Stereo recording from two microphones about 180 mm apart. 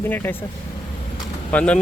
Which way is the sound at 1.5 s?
5° left (ahead or behind).